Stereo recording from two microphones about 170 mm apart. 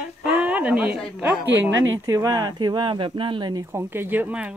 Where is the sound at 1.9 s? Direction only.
20° right (ahead or behind).